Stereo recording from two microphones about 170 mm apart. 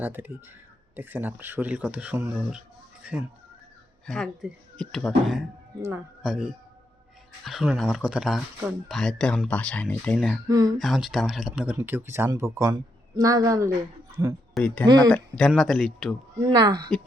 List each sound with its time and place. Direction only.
0.0 s speech: 10° right (ahead or behind)
4.0 s speech: 5° left (ahead or behind)
10.5 s speech: 20° right (ahead or behind)
10.8 s speech: centre (ahead or behind); by 13.7 s 20° right (ahead or behind)
14.5 s speech: 5° left (ahead or behind)
16.4 s speech: 25° right (ahead or behind)